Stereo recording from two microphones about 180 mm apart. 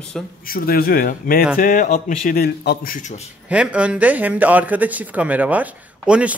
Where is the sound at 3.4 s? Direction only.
5° right (ahead or behind).